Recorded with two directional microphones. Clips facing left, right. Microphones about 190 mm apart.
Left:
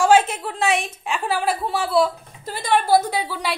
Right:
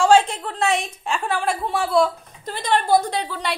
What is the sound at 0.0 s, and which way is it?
A woman's voice, 5° left (ahead or behind).